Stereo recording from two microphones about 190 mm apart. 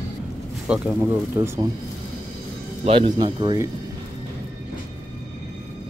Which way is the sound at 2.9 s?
25° right (ahead or behind).